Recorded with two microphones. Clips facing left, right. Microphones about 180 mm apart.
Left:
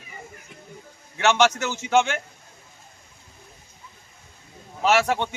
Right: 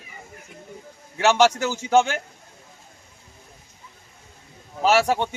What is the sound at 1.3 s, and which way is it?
Speech, 35° right (ahead or behind).